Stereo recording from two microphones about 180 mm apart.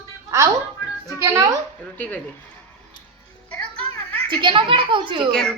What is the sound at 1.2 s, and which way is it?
Speech, 15° right (ahead or behind).